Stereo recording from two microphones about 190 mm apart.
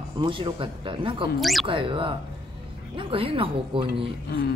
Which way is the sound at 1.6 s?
25° right (ahead or behind).